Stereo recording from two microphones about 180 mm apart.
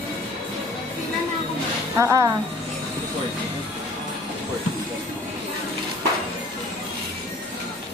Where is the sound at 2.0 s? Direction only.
15° right (ahead or behind).